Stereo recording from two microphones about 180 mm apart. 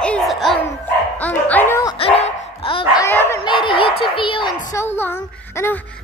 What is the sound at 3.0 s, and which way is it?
Dog, 15° left (ahead or behind).